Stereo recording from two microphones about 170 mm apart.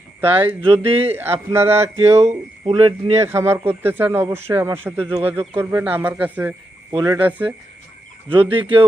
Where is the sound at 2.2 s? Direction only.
30° right (ahead or behind).